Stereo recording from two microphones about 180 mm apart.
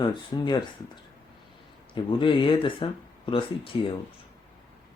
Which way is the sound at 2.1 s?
30° left (ahead or behind).